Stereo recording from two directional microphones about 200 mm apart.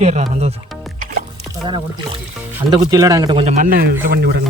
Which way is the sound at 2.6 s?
20° right (ahead or behind).